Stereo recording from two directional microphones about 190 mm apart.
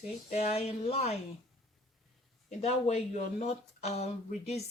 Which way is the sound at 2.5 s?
35° left (ahead or behind).